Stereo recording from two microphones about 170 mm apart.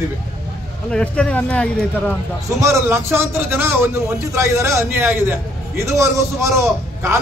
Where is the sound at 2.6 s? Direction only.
15° right (ahead or behind).